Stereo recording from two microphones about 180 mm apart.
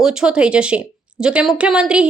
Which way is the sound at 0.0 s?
5° right (ahead or behind).